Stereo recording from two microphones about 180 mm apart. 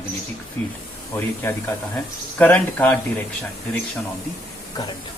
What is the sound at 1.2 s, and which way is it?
Speech, 15° left (ahead or behind).